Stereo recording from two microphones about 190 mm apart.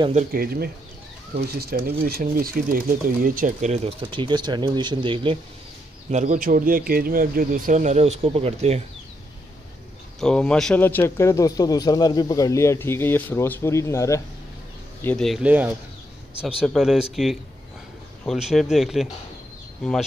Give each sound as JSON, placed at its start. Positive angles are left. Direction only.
{"t": 0.0, "sound": "speech", "side_deg": -40}
{"t": 6.0, "sound": "speech", "side_deg": -40}
{"t": 10.2, "sound": "a man's voice", "side_deg": 5}
{"t": 15.0, "sound": "speech", "side_deg": 0}